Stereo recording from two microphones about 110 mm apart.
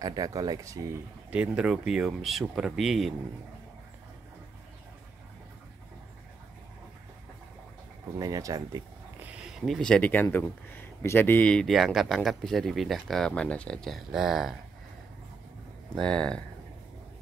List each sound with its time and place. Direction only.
0.0 s speech: 35° right (ahead or behind)
1.3 s speech: 10° right (ahead or behind)
8.2 s speech: 30° right (ahead or behind)
9.2 s a sound: 10° right (ahead or behind)
9.8 s speech: 10° left (ahead or behind)
15.9 s speech: 10° left (ahead or behind)